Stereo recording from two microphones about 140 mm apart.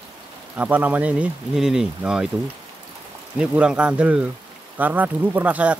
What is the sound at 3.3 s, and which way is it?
A man's voice, 10° right (ahead or behind).